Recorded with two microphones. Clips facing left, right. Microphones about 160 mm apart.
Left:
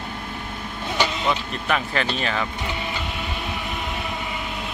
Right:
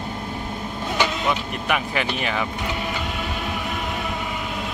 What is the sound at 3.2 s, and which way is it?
Train, centre (ahead or behind).